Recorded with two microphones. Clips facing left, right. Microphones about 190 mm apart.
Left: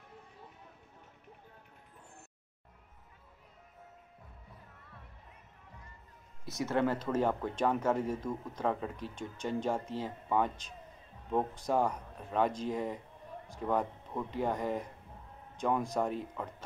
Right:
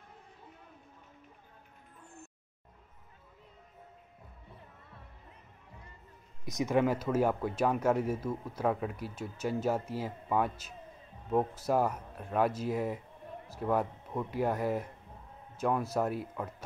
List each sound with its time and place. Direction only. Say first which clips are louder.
6.4 s speech: right 3 dB; 15° right (ahead or behind)